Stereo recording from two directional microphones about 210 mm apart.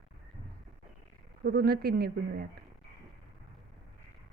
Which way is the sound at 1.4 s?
50° right (ahead or behind).